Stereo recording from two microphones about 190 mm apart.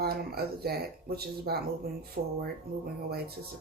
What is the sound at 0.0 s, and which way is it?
Speech, 55° right (ahead or behind).